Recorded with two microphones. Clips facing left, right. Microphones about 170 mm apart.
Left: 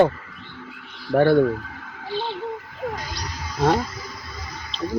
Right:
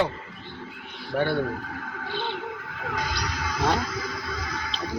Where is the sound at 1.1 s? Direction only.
45° left (ahead or behind).